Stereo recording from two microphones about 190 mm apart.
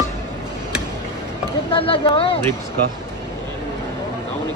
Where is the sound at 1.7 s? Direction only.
30° left (ahead or behind).